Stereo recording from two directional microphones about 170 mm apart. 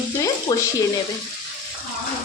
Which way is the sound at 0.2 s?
20° left (ahead or behind).